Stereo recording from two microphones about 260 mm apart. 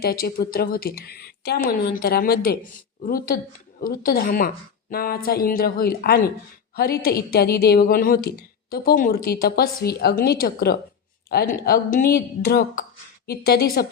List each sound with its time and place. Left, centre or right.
0.0 s a woman's voice: left